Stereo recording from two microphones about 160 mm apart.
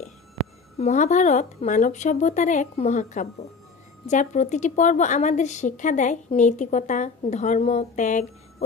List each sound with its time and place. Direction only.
0.7 s a woman's voice: 45° left (ahead or behind)